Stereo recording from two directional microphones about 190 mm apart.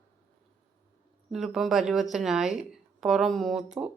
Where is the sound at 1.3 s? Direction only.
Centre (ahead or behind).